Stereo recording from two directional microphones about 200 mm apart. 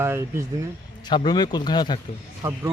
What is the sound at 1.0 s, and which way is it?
Speech, 20° left (ahead or behind).